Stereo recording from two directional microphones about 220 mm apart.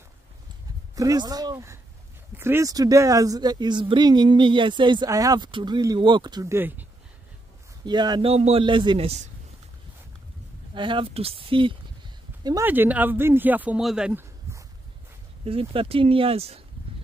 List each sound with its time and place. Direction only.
0.9 s speech: 15° right (ahead or behind)
10.7 s speech: 20° right (ahead or behind)
12.4 s speech: 10° right (ahead or behind)
15.4 s speech: 25° right (ahead or behind)